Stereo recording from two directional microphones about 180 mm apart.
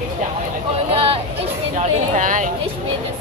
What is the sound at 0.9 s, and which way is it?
Speech, 30° right (ahead or behind).